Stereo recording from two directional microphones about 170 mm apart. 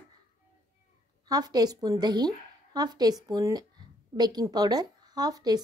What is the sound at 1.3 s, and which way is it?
A woman's voice, 20° right (ahead or behind).